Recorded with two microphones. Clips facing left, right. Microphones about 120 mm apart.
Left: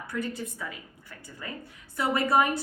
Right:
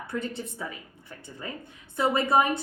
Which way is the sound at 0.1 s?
25° right (ahead or behind).